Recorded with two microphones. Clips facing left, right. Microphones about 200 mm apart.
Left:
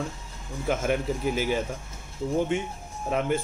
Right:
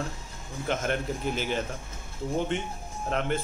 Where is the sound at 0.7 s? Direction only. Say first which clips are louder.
Left 3 dB; 5° left (ahead or behind).